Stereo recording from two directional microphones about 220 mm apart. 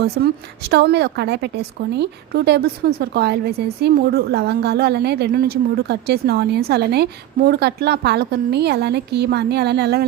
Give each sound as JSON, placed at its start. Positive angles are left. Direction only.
{"t": 0.0, "sound": "a woman's voice", "side_deg": -50}